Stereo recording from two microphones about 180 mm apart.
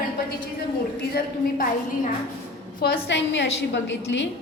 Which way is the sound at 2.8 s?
75° left (ahead or behind).